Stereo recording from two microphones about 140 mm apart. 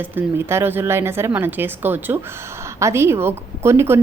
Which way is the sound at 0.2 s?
15° right (ahead or behind).